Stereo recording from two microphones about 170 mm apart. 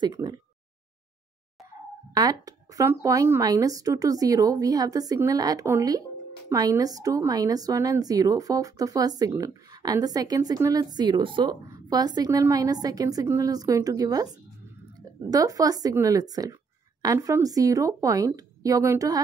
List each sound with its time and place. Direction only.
0.0 s a woman's voice: 25° right (ahead or behind)
2.1 s a woman's voice: 20° right (ahead or behind)